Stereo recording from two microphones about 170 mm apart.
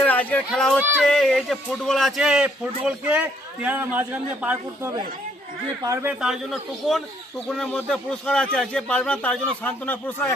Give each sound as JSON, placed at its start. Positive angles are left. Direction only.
{"t": 0.0, "sound": "speech", "side_deg": 10}
{"t": 6.1, "sound": "speech", "side_deg": -5}